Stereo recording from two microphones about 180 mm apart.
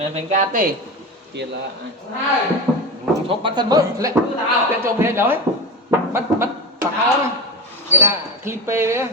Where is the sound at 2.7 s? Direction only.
Centre (ahead or behind).